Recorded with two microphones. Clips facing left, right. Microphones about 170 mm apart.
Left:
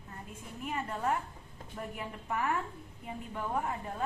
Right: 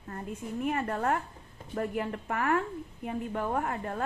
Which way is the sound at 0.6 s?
60° right (ahead or behind).